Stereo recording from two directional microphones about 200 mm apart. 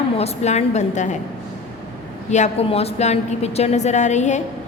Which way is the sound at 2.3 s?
35° left (ahead or behind).